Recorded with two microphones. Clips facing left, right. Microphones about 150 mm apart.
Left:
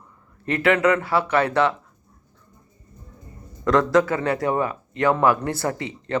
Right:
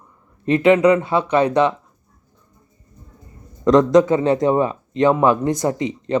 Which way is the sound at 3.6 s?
20° right (ahead or behind).